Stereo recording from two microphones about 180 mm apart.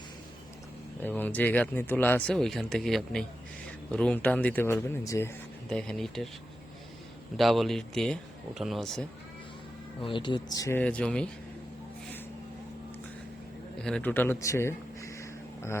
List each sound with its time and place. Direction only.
1.0 s speech: 10° left (ahead or behind)
5.6 s speech: 5° left (ahead or behind)
7.3 s speech: centre (ahead or behind)
10.0 s speech: 25° left (ahead or behind); by 11.3 s 5° left (ahead or behind)
13.8 s speech: 5° left (ahead or behind)